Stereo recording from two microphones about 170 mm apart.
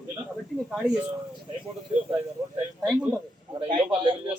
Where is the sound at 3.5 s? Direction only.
35° right (ahead or behind).